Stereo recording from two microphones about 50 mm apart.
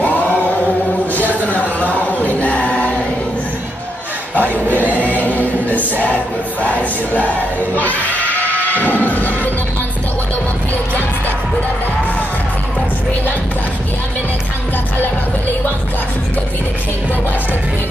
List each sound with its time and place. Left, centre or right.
0.0 s chant: left
1.1 s choir: left
4.4 s choir: left